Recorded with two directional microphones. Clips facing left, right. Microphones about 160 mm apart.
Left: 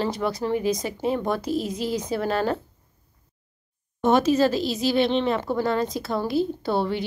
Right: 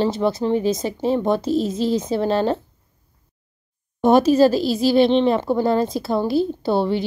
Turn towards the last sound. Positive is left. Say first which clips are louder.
# right 5 dB
turn(degrees=-30)  # may be behind; listen again after turning